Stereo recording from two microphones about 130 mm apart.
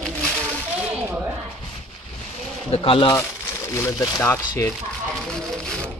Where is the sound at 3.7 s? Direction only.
20° left (ahead or behind).